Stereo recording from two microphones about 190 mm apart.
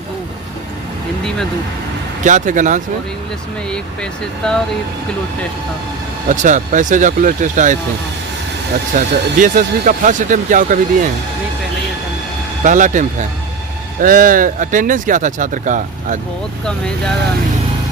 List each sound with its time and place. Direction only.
2.2 s speech: 40° right (ahead or behind)
4.4 s speech: 5° left (ahead or behind)
6.2 s speech: 40° right (ahead or behind)
8.9 s speech: 45° right (ahead or behind)
12.6 s speech: 40° right (ahead or behind)